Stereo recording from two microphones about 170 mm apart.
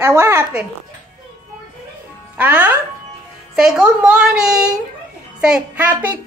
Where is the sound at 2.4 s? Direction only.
10° right (ahead or behind).